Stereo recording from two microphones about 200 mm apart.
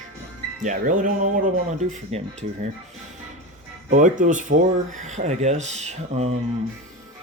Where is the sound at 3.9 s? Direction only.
40° right (ahead or behind).